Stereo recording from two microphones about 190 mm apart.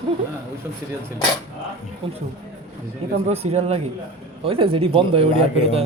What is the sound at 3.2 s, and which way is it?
Speech, 35° right (ahead or behind).